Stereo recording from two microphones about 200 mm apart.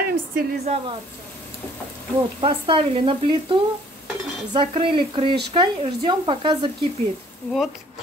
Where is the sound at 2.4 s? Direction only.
25° right (ahead or behind).